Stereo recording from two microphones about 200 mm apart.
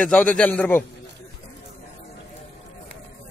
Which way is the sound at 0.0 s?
5° left (ahead or behind).